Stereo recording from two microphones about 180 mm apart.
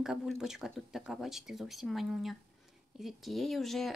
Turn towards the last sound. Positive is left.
turn(degrees=0)  # may be behind; listen again after turning